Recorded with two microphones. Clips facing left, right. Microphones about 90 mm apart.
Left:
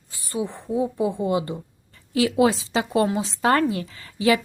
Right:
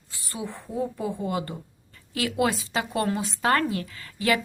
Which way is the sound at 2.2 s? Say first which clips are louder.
Left 6 dB; 25° left (ahead or behind).